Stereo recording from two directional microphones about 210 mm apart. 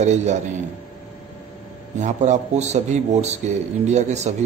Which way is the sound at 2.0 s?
35° right (ahead or behind).